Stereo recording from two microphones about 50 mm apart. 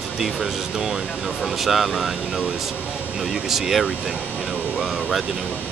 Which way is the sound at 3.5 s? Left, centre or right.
Centre.